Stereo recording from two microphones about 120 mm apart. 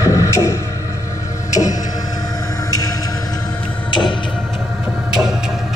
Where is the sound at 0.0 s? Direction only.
25° left (ahead or behind).